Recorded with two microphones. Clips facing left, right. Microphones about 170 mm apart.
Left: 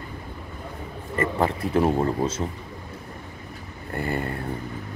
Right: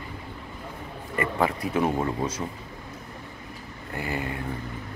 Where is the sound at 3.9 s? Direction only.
5° right (ahead or behind).